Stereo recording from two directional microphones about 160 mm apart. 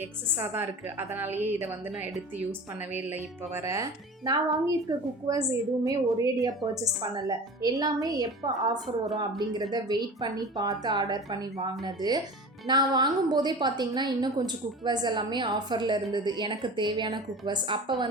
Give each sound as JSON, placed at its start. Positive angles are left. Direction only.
{"t": 0.5, "sound": "a woman's voice", "side_deg": -10}